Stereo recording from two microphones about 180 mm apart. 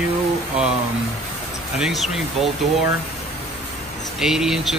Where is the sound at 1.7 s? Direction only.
Centre (ahead or behind).